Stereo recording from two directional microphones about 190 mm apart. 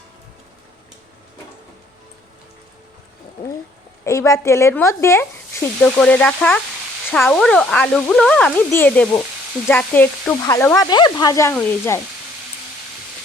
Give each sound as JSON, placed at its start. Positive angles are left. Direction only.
{"t": 4.0, "sound": "speech", "side_deg": 15}